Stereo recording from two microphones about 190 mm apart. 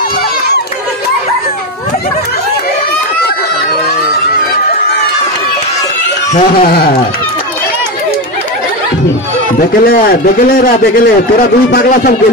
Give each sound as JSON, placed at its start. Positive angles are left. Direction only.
{"t": 6.3, "sound": "speech", "side_deg": 50}
{"t": 9.6, "sound": "speech", "side_deg": 50}